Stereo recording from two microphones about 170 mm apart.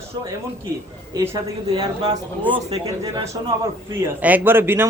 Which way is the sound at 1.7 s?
20° right (ahead or behind).